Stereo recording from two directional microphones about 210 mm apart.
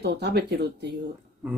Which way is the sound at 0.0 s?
50° right (ahead or behind).